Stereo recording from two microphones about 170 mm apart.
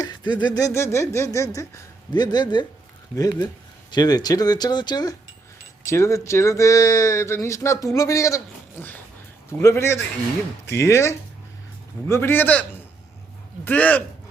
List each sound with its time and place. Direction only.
0.0 s speech: 25° left (ahead or behind)
3.9 s speech: 25° left (ahead or behind)
9.5 s speech: 15° left (ahead or behind)